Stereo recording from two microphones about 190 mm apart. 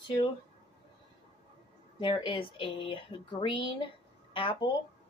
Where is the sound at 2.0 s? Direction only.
25° left (ahead or behind).